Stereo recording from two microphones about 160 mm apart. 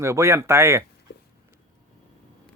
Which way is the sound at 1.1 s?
90° left.